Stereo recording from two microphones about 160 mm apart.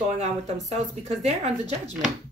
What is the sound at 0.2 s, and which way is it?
Speech, 45° right (ahead or behind).